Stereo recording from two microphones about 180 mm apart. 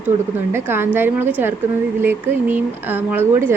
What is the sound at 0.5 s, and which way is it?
A woman's voice, 15° right (ahead or behind).